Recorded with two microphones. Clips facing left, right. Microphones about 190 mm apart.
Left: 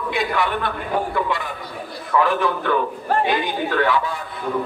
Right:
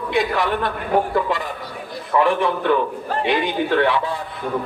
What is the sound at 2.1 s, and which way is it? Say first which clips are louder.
Speech: right 1 dB; 25° right (ahead or behind).